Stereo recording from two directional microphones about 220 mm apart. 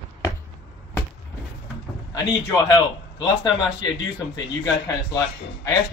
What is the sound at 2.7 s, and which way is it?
Speech, 15° left (ahead or behind).